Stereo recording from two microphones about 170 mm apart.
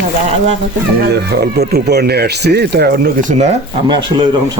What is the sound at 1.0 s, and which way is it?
Speech, 70° right (ahead or behind).